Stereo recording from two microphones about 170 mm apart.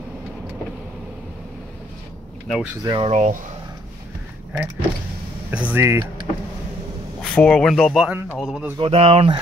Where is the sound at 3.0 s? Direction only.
45° right (ahead or behind).